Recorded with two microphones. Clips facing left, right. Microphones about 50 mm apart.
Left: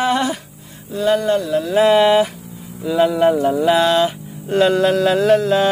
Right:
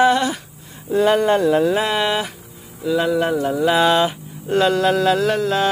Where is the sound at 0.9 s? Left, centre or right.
Right.